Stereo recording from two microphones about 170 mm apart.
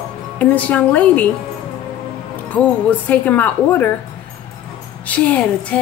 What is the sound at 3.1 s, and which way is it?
Speech, 10° left (ahead or behind).